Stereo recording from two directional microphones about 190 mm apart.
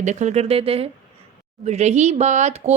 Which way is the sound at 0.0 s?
40° right (ahead or behind).